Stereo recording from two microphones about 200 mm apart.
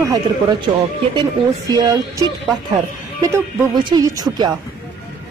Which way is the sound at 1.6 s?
20° right (ahead or behind).